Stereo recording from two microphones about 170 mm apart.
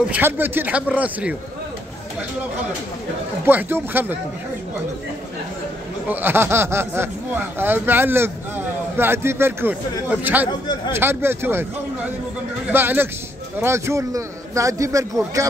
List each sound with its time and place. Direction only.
0.1 s speech: 10° right (ahead or behind)
3.4 s speech: 10° right (ahead or behind)
6.0 s a man's voice: 15° right (ahead or behind)